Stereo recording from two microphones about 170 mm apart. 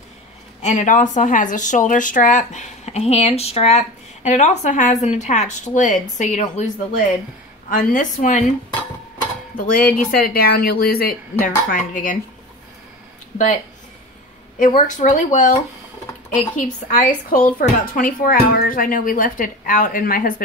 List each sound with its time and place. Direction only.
0.6 s speech: 45° left (ahead or behind)
7.7 s speech: 50° left (ahead or behind)
9.6 s a woman's voice: 55° left (ahead or behind)
14.6 s a woman's voice: 50° left (ahead or behind)